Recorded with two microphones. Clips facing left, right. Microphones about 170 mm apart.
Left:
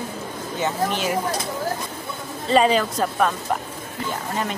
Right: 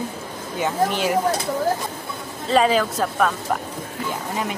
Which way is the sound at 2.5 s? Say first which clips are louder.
Even; centre (ahead or behind).